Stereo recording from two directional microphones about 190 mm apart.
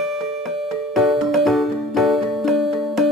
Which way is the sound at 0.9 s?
Centre (ahead or behind).